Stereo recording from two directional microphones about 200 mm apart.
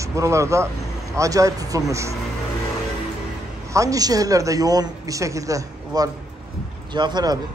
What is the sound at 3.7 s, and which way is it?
A woman's voice, 15° right (ahead or behind).